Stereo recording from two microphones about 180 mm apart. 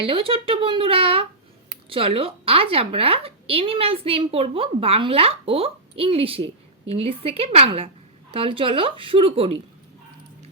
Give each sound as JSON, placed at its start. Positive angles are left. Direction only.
{"t": 0.0, "sound": "a woman's voice", "side_deg": -30}